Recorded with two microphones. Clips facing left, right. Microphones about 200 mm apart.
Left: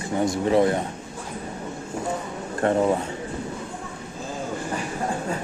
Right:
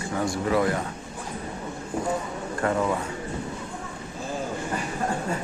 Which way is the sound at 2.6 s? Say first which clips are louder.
Left 4 dB; 30° left (ahead or behind).